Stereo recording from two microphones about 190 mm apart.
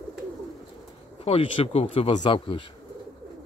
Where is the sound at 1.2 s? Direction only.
30° left (ahead or behind).